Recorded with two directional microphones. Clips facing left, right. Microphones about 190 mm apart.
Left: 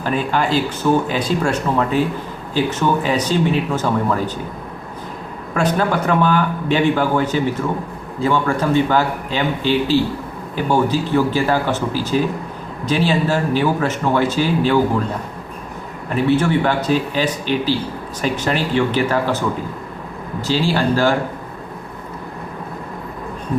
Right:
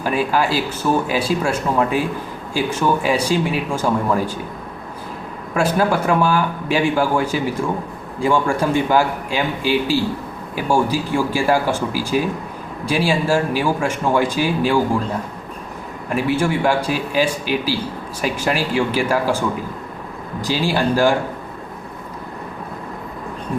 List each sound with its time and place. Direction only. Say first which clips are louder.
0.0 s speech: right 1 dB; 10° right (ahead or behind)
5.5 s speech: even; 10° right (ahead or behind)
16.0 s speech: left 2 dB; 10° right (ahead or behind)
20.4 s speech: left 1 dB; 15° right (ahead or behind)